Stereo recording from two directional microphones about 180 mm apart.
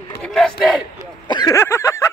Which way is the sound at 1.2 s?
25° left (ahead or behind).